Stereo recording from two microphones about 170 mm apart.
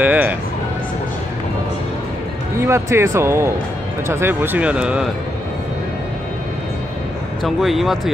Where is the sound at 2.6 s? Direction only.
15° right (ahead or behind).